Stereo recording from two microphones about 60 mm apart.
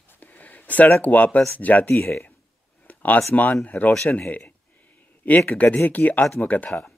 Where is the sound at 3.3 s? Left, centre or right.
Left.